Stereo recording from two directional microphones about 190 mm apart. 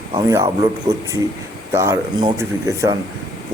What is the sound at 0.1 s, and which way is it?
Speech, 20° right (ahead or behind).